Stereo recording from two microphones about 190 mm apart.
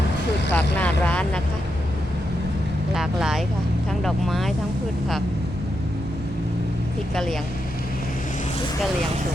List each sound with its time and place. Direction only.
0.5 s speech: 10° left (ahead or behind)
2.9 s speech: 5° right (ahead or behind)